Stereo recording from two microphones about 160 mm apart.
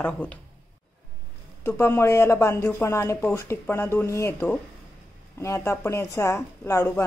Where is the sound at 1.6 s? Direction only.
15° left (ahead or behind).